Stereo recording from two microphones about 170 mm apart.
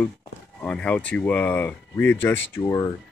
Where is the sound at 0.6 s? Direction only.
5° left (ahead or behind).